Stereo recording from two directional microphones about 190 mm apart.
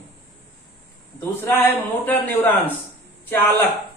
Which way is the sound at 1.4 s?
10° left (ahead or behind).